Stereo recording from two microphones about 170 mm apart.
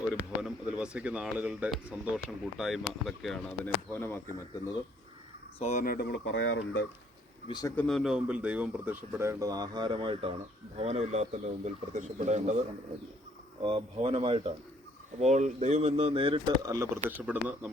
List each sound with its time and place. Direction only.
0.1 s speech: 5° right (ahead or behind); by 4.2 s 10° left (ahead or behind)
5.5 s speech: 40° left (ahead or behind)
5.8 s speech: 65° left (ahead or behind); by 6.4 s 80° left
7.4 s speech: 25° left (ahead or behind)
7.8 s speech: centre (ahead or behind); by 12.5 s 45° right (ahead or behind)
13.6 s speech: 30° right (ahead or behind); by 17.7 s 10° right (ahead or behind)